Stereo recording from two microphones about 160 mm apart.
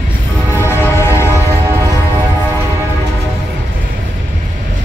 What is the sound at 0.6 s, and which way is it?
Train, 15° left (ahead or behind).